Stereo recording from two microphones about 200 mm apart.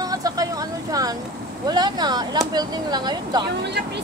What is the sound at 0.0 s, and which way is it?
Vehicle, 20° right (ahead or behind).